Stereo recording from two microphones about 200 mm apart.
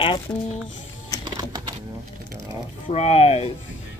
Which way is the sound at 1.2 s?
20° right (ahead or behind).